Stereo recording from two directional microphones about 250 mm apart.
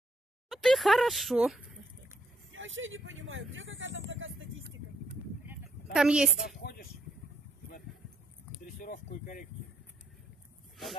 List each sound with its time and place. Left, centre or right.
0.5 s speech: centre
2.5 s vehicle: right
5.9 s a woman's voice: centre
6.6 s a sound: left
8.8 s speech: left